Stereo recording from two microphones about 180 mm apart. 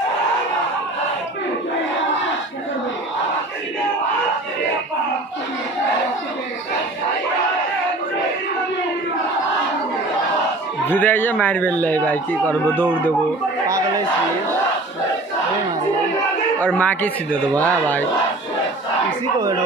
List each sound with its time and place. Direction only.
10.9 s a man's voice: 10° left (ahead or behind)
13.7 s a sound: 20° right (ahead or behind)
16.5 s a man's voice: 10° left (ahead or behind)